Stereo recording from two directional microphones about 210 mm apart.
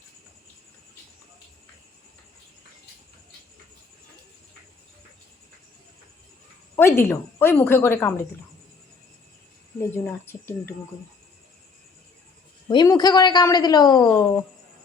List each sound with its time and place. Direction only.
6.7 s a woman's voice: 10° left (ahead or behind)
10.3 s a woman's voice: 10° left (ahead or behind)
12.6 s a woman's voice: 20° left (ahead or behind)